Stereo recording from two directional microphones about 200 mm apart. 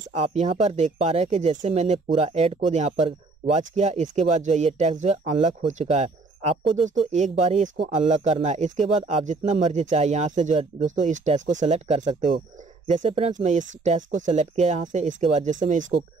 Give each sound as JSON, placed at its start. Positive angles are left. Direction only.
{"t": 0.1, "sound": "speech", "side_deg": -35}